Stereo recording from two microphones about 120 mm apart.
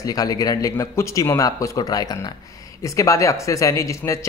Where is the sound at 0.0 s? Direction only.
30° left (ahead or behind).